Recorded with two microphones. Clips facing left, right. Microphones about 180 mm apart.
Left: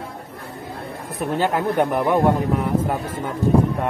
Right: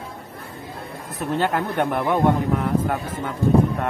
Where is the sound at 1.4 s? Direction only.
10° left (ahead or behind).